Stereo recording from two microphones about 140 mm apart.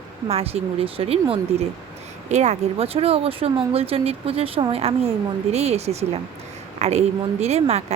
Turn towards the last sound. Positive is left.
turn(degrees=-50)  # may be behind; listen again after turning